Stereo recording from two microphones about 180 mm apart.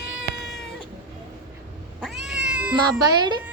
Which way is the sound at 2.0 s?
Centre (ahead or behind).